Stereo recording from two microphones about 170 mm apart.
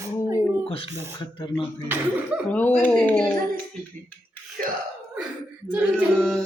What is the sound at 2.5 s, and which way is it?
Speech, 10° left (ahead or behind).